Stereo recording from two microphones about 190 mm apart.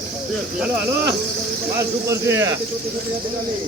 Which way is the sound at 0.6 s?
10° right (ahead or behind).